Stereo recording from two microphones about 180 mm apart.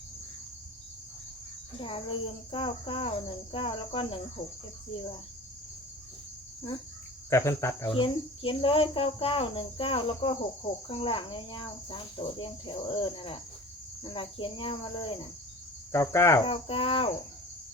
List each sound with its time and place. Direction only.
1.8 s speech: 30° left (ahead or behind)
7.3 s cricket: 15° left (ahead or behind)
7.9 s speech: 30° left (ahead or behind)
15.9 s cricket: 15° left (ahead or behind)
16.4 s speech: 30° left (ahead or behind)